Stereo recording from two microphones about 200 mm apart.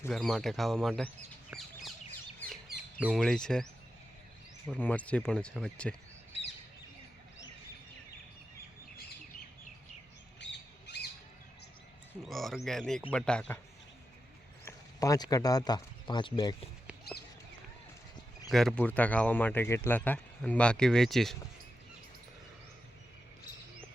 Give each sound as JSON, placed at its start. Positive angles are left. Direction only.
{"t": 0.0, "sound": "speech", "side_deg": 0}
{"t": 1.5, "sound": "bird", "side_deg": 0}
{"t": 3.0, "sound": "speech", "side_deg": 0}
{"t": 4.7, "sound": "speech", "side_deg": 5}
{"t": 10.4, "sound": "squawk", "side_deg": 55}
{"t": 12.2, "sound": "speech", "side_deg": 0}
{"t": 14.6, "sound": "speech", "side_deg": 15}
{"t": 18.4, "sound": "speech", "side_deg": 0}